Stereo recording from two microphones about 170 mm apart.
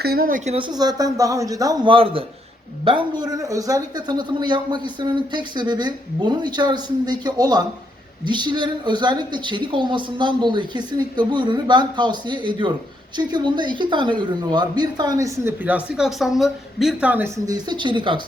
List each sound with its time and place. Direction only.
0.0 s speech: 60° right (ahead or behind)
0.5 s speech: 25° right (ahead or behind)
17.4 s speech: 25° right (ahead or behind)